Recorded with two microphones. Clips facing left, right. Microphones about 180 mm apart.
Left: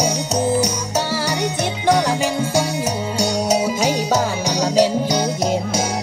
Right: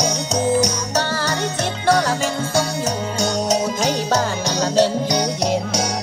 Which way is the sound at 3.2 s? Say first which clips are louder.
Left 2 dB; 10° left (ahead or behind).